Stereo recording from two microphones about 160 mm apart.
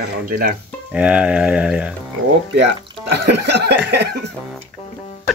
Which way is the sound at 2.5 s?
90° right.